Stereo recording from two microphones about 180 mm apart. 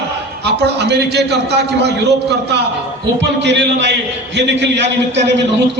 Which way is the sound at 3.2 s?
75° right (ahead or behind).